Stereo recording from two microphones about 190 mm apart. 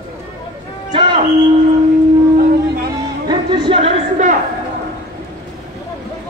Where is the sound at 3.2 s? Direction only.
25° right (ahead or behind).